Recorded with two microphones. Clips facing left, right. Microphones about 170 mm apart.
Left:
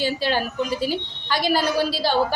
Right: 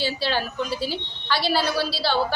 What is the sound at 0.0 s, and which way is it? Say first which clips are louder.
A woman's voice: left 3 dB; 45° left (ahead or behind).